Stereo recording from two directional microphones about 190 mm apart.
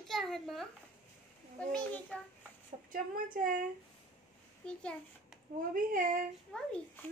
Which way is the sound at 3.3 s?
45° right (ahead or behind).